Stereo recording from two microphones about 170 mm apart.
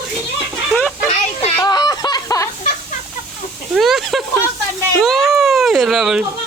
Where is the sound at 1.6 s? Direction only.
25° left (ahead or behind).